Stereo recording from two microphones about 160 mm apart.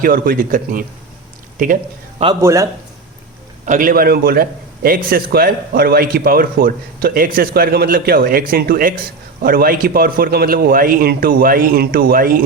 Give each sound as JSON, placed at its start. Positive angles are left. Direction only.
{"t": 0.0, "sound": "speech", "side_deg": -65}
{"t": 2.4, "sound": "a man's voice", "side_deg": -20}
{"t": 3.7, "sound": "speech", "side_deg": -60}